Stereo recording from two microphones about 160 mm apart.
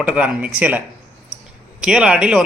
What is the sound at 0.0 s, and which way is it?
Speech, 5° right (ahead or behind).